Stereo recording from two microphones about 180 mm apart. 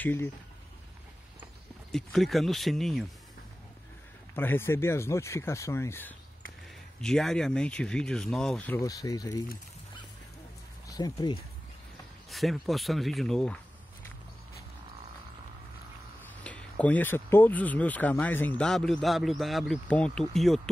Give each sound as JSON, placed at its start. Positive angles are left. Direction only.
{"t": 0.0, "sound": "speech", "side_deg": 10}
{"t": 1.9, "sound": "speech", "side_deg": 0}
{"t": 4.4, "sound": "speech", "side_deg": 10}
{"t": 8.8, "sound": "speech", "side_deg": 20}
{"t": 10.9, "sound": "speech", "side_deg": 20}
{"t": 12.3, "sound": "speech", "side_deg": 0}
{"t": 16.4, "sound": "speech", "side_deg": 5}